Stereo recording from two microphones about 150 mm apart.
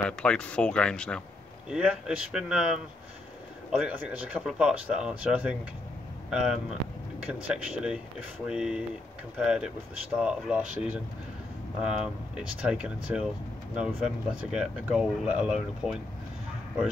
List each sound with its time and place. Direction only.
0.0 s speech: 5° left (ahead or behind)
1.7 s speech: 5° right (ahead or behind)